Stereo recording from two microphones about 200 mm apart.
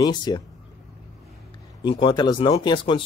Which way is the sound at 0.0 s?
20° left (ahead or behind).